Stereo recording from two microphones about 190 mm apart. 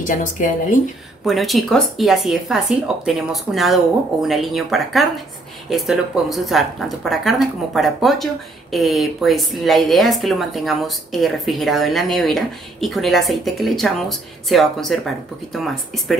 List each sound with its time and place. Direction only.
0.0 s speech: 45° left (ahead or behind)
1.2 s speech: centre (ahead or behind)